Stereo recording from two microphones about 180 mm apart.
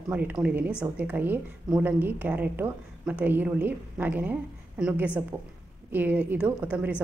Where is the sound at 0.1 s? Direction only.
10° right (ahead or behind).